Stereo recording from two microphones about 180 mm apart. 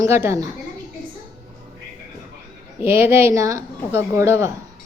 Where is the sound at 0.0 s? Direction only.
15° right (ahead or behind).